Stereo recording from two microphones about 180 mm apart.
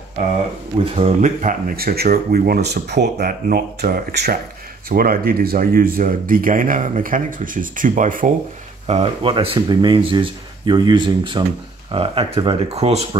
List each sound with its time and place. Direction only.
0.9 s speech: 40° right (ahead or behind)
8.8 s speech: 35° right (ahead or behind)